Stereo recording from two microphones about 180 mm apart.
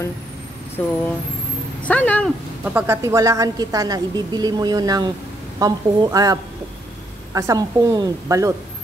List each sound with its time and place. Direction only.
0.8 s speech: 5° left (ahead or behind)
2.6 s a woman's voice: 10° right (ahead or behind)